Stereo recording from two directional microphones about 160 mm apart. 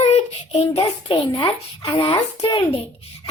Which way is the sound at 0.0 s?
40° left (ahead or behind).